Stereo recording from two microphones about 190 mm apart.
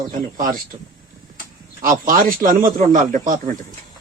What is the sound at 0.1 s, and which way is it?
Speech, 45° right (ahead or behind).